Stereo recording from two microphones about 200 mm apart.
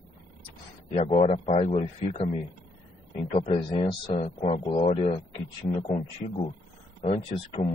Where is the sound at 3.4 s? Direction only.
25° left (ahead or behind).